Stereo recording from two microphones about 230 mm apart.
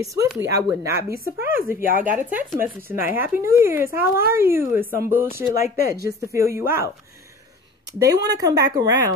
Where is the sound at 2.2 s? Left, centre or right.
Centre.